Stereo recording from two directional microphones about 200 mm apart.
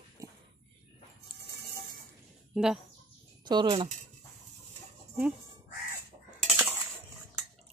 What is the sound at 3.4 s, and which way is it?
Speech, 20° right (ahead or behind).